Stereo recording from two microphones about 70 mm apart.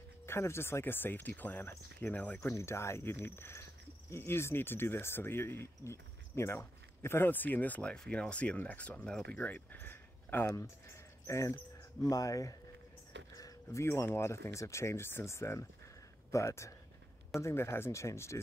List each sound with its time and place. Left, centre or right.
0.3 s speech: left
2.4 s speech: left
7.9 s speech: centre
9.4 s speech: left
11.2 s speech: left
12.0 s speech: left